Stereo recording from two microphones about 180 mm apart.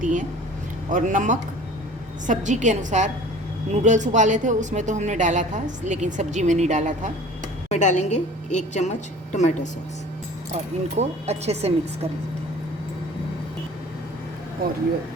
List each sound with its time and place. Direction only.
0.0 s a sound: 45° right (ahead or behind)
0.9 s a woman's voice: 45° right (ahead or behind)
7.7 s a woman's voice: 40° left (ahead or behind)
10.5 s speech: 35° right (ahead or behind)